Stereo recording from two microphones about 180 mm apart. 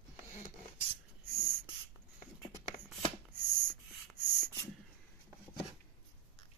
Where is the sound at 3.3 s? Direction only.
50° right (ahead or behind).